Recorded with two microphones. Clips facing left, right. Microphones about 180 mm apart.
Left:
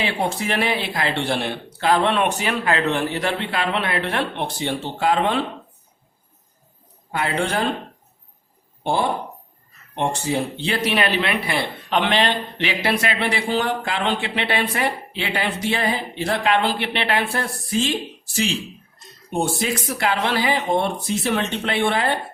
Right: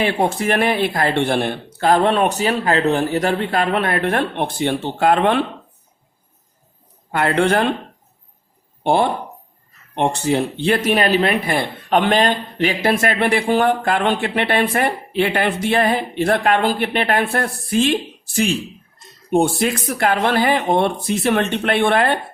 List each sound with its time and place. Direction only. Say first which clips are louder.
0.0 s speech: right 5 dB; 50° right (ahead or behind)
7.1 s speech: right 6 dB; 60° right (ahead or behind)
8.8 s speech: right 5 dB; 65° right (ahead or behind)
19.3 s speech: right 6 dB; 60° right (ahead or behind)